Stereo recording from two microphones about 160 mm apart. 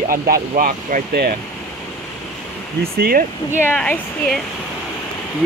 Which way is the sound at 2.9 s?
70° right (ahead or behind).